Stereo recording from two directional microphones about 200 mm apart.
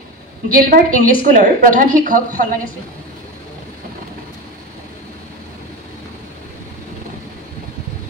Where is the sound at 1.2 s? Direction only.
45° right (ahead or behind).